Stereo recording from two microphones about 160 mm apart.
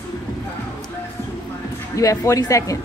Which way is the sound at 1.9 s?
20° left (ahead or behind).